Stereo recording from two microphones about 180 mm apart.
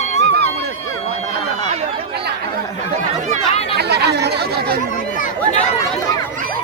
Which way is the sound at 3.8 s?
65° right (ahead or behind).